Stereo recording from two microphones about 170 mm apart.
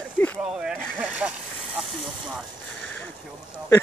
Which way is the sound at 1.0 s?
10° right (ahead or behind).